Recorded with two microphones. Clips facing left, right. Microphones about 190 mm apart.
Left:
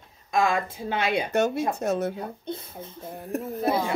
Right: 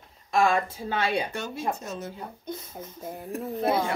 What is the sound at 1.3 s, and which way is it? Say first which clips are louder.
Speech: left 7 dB; 70° left (ahead or behind).